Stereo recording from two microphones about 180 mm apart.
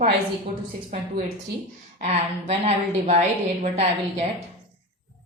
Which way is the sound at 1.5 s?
70° right (ahead or behind).